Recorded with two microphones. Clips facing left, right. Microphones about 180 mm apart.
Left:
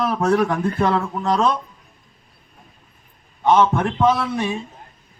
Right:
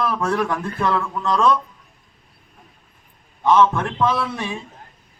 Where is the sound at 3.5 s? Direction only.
20° left (ahead or behind).